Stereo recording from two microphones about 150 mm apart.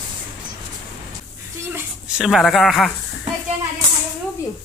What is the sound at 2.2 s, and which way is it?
Speech, centre (ahead or behind).